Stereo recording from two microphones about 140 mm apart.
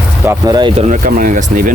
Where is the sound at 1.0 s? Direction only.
75° right (ahead or behind).